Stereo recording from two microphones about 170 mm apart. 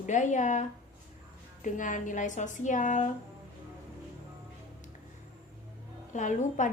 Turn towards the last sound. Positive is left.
turn(degrees=45)  # may be behind; listen again after turning